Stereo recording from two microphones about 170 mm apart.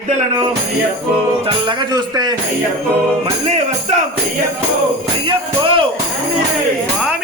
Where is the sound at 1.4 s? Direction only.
25° right (ahead or behind).